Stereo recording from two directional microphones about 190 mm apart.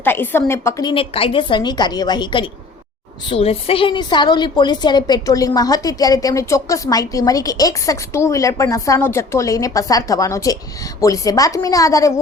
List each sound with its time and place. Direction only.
0.0 s a woman's voice: 10° left (ahead or behind)